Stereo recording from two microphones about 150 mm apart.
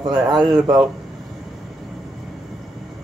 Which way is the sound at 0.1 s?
Centre (ahead or behind).